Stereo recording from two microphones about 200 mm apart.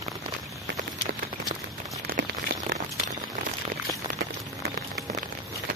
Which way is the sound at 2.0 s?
50° right (ahead or behind).